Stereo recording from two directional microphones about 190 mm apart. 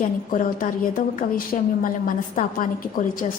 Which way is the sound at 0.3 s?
45° left (ahead or behind).